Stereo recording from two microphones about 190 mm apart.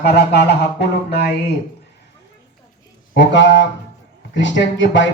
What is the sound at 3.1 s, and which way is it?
Speech, 70° left (ahead or behind).